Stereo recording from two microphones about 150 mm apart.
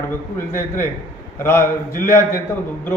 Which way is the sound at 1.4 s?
15° left (ahead or behind).